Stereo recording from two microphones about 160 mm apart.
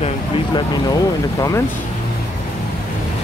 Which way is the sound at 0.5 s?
25° left (ahead or behind).